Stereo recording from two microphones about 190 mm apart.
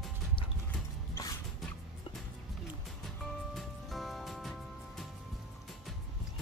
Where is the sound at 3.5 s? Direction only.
Centre (ahead or behind).